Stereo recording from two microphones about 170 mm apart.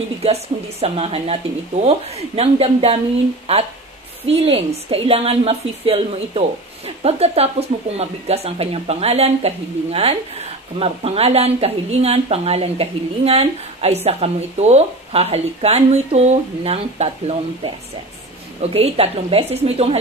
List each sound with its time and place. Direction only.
0.2 s speech: 40° right (ahead or behind)
4.3 s speech: 35° right (ahead or behind)